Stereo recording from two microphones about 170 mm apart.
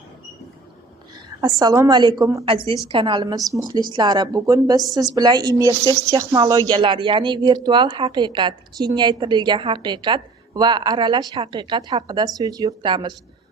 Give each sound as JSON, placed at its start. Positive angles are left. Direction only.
{"t": 1.4, "sound": "speech", "side_deg": -25}
{"t": 2.4, "sound": "a woman's voice", "side_deg": -35}